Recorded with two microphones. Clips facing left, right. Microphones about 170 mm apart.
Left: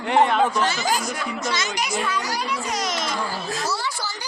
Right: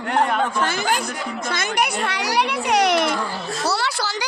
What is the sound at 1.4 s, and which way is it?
Children playing, 55° right (ahead or behind).